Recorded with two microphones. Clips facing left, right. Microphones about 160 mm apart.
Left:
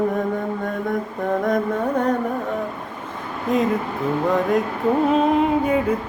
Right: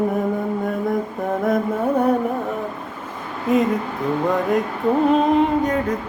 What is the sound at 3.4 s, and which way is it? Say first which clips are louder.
Mantra: right 2 dB; centre (ahead or behind).